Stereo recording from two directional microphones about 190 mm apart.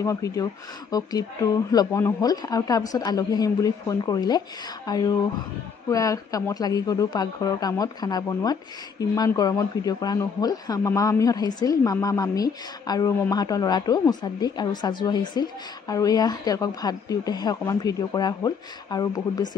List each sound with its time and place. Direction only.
0.0 s a man's voice: 15° left (ahead or behind)